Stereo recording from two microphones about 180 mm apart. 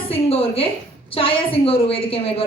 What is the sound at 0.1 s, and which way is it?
A woman's voice, 30° left (ahead or behind).